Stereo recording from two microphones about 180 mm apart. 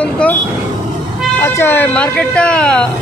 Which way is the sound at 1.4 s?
10° left (ahead or behind).